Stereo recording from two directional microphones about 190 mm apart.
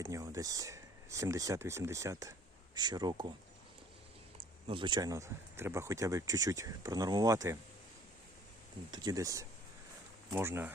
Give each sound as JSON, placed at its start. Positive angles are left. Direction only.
{"t": 0.0, "sound": "speech", "side_deg": -15}
{"t": 4.7, "sound": "speech", "side_deg": -25}
{"t": 8.9, "sound": "speech", "side_deg": -20}